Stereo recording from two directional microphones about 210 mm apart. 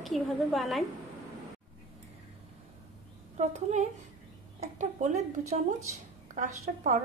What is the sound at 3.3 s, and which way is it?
A woman's voice, 35° right (ahead or behind).